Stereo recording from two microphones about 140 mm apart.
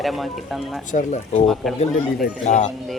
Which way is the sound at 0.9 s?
55° left (ahead or behind).